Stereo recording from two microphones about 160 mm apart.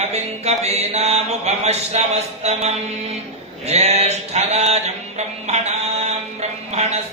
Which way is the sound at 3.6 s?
40° right (ahead or behind).